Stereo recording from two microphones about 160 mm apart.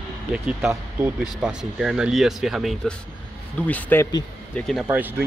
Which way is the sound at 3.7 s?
10° left (ahead or behind).